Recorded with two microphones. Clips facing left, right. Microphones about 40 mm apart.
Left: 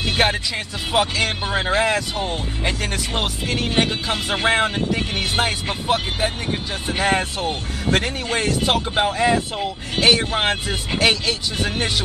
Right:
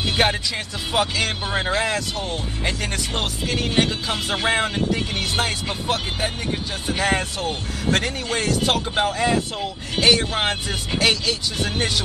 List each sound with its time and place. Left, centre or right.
0.0 s speech: centre
2.1 s speech: left
2.6 s speech: centre